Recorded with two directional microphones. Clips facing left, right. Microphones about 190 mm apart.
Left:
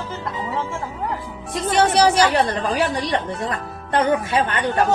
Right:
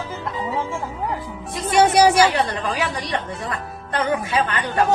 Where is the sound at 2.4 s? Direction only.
35° left (ahead or behind).